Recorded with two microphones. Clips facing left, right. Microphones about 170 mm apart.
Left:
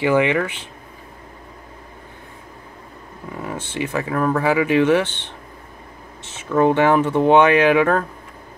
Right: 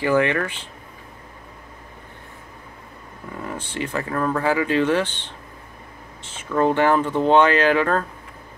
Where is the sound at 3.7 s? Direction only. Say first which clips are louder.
Left 3 dB; 10° left (ahead or behind).